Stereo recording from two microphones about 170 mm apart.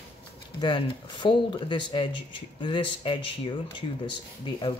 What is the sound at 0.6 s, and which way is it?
Speech, 30° left (ahead or behind).